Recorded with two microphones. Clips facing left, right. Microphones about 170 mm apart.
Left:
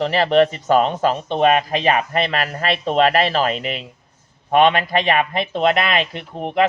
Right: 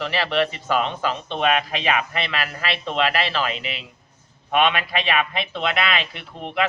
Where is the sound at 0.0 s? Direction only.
40° left (ahead or behind).